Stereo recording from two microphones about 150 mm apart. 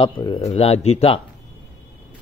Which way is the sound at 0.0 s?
35° left (ahead or behind).